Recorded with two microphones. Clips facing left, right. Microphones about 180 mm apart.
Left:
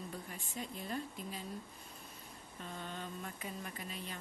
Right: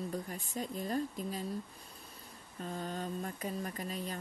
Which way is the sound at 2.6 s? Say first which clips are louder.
Right 6 dB; 40° right (ahead or behind).